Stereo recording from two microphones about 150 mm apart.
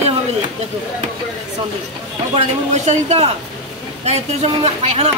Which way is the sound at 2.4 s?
50° right (ahead or behind).